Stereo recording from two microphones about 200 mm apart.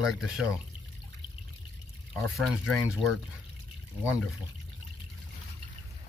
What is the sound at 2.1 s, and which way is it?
Speech, centre (ahead or behind).